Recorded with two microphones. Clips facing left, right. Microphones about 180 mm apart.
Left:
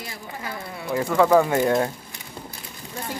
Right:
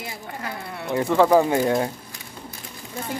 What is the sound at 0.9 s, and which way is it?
Speech, 25° right (ahead or behind).